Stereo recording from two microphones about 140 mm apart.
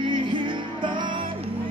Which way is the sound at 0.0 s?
35° right (ahead or behind).